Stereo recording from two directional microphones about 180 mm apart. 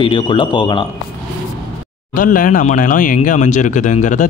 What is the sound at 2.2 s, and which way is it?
Speech, 50° left (ahead or behind).